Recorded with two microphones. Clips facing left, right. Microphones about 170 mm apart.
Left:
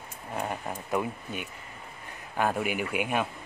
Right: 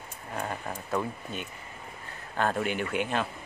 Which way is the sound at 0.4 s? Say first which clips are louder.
Left 1 dB; 15° left (ahead or behind).